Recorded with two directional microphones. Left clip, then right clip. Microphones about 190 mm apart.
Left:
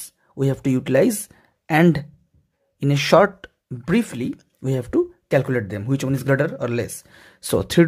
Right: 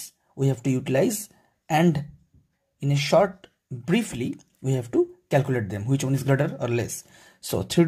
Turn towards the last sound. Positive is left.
turn(degrees=25)  # may be behind; listen again after turning